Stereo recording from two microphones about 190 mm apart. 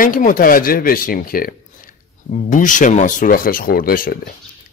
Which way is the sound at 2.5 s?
40° left (ahead or behind).